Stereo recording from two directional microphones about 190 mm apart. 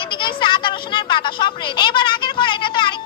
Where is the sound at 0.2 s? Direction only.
25° left (ahead or behind).